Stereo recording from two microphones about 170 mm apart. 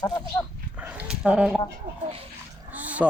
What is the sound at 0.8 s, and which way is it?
Dog, 10° right (ahead or behind).